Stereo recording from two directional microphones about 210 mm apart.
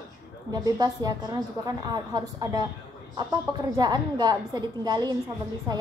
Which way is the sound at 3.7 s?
20° right (ahead or behind).